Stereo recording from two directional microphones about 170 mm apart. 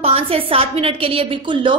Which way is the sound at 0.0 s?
35° right (ahead or behind).